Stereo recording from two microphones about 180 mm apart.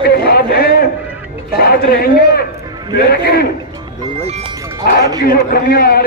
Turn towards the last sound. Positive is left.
turn(degrees=55)  # may be behind; listen again after turning